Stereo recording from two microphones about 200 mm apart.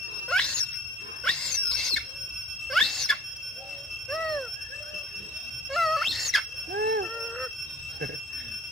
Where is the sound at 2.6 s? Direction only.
Centre (ahead or behind).